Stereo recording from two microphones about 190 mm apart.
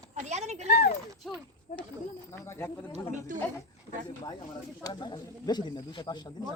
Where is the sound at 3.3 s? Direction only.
45° right (ahead or behind).